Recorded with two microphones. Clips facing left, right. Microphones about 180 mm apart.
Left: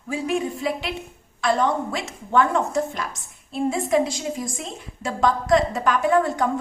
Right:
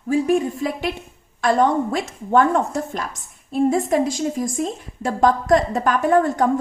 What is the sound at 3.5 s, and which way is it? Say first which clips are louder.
A woman's voice: right 3 dB; 45° right (ahead or behind).